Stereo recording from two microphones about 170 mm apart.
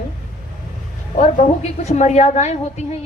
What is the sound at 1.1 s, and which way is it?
A woman's voice, 40° left (ahead or behind).